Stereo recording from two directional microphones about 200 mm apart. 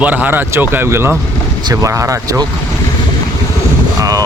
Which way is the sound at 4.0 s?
20° right (ahead or behind).